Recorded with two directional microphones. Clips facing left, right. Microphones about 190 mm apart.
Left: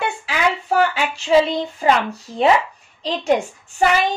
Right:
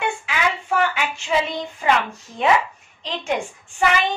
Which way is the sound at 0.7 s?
35° left (ahead or behind).